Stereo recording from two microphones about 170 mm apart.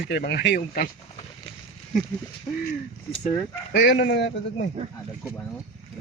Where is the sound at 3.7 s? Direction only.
90° left.